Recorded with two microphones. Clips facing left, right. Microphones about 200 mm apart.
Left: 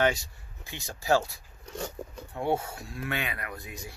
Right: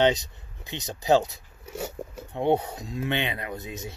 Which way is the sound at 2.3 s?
20° right (ahead or behind).